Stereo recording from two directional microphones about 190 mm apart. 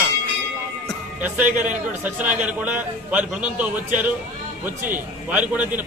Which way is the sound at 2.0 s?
10° right (ahead or behind).